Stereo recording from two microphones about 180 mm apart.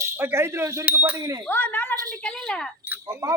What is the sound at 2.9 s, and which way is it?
Speech, 15° right (ahead or behind).